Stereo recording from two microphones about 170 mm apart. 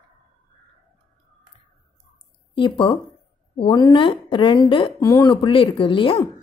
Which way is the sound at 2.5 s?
30° left (ahead or behind).